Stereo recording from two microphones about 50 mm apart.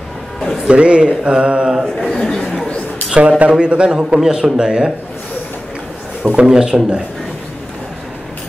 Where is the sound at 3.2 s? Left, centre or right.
Right.